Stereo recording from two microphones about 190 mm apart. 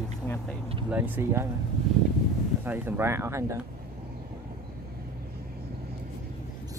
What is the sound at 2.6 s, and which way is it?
Speech, 10° right (ahead or behind).